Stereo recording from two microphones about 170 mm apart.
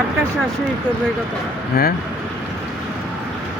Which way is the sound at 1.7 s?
60° left (ahead or behind).